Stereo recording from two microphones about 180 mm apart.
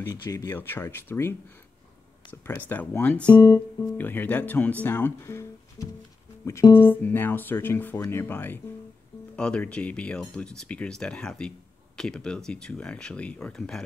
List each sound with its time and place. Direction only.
0.2 s speech: 20° left (ahead or behind)
2.4 s speech: 10° left (ahead or behind)
3.3 s speech: 20° left (ahead or behind); by 13.8 s 5° left (ahead or behind)